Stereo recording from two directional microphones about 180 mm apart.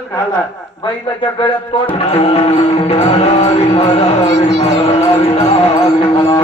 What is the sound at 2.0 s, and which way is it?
Music, 35° left (ahead or behind).